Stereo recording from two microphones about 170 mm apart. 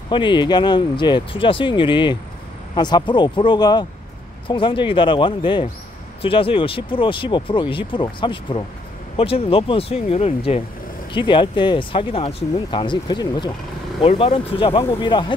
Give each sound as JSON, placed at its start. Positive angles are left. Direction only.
{"t": 0.1, "sound": "speech", "side_deg": 30}